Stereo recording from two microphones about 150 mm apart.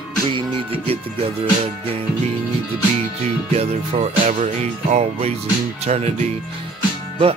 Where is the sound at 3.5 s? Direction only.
45° right (ahead or behind).